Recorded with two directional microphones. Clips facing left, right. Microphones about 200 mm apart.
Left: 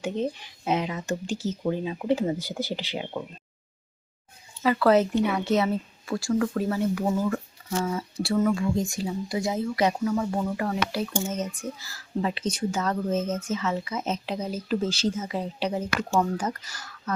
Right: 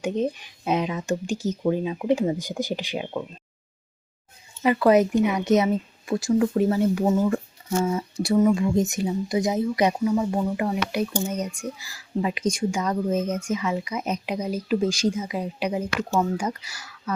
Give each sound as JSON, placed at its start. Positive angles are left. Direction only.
{"t": 0.0, "sound": "speech", "side_deg": -15}
{"t": 4.6, "sound": "a woman's voice", "side_deg": -15}